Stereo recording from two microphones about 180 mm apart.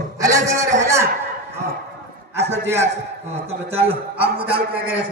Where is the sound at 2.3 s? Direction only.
15° right (ahead or behind).